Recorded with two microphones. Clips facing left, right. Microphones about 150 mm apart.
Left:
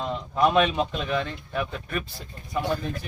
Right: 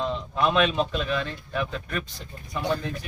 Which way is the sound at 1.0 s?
20° left (ahead or behind).